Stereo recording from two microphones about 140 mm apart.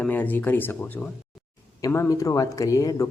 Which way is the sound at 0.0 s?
10° left (ahead or behind).